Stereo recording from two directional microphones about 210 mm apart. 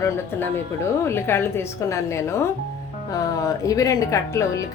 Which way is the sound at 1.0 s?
10° left (ahead or behind).